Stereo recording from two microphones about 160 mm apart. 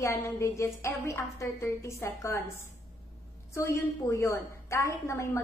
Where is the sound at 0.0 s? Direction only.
15° left (ahead or behind).